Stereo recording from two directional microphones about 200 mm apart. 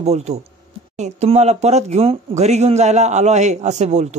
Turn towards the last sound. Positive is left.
turn(degrees=-35)  # may be behind; listen again after turning